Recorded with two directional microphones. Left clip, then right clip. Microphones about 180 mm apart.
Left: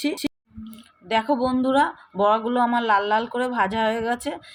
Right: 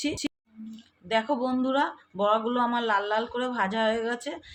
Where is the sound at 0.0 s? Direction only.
40° left (ahead or behind).